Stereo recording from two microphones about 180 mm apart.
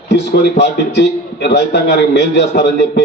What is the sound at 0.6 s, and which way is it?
A man's voice, 70° left (ahead or behind).